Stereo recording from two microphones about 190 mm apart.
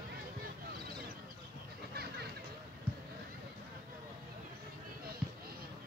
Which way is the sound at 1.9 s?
55° right (ahead or behind).